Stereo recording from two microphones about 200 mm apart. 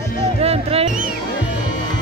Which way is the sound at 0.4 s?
30° right (ahead or behind).